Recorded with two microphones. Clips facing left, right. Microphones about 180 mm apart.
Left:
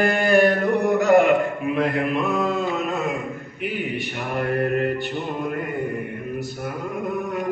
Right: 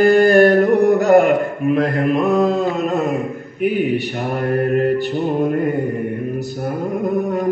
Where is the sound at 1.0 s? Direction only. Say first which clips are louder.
Right 1 dB; 45° right (ahead or behind).